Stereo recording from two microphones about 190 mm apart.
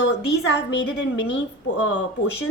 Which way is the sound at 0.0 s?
65° left (ahead or behind).